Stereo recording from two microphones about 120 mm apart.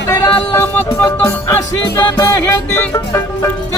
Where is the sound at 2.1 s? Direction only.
25° left (ahead or behind).